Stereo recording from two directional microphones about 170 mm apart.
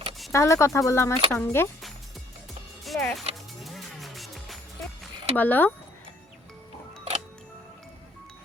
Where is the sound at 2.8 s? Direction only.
Centre (ahead or behind).